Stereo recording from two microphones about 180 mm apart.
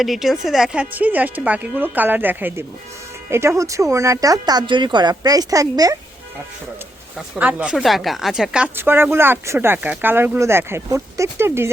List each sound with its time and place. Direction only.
0.0 s speech: centre (ahead or behind); by 6.0 s 20° right (ahead or behind)
7.3 s speech: 5° right (ahead or behind)